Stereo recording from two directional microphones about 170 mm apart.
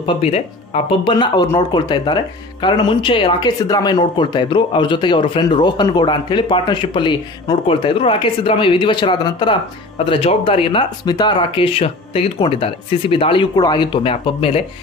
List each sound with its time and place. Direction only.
0.0 s speech: 40° left (ahead or behind)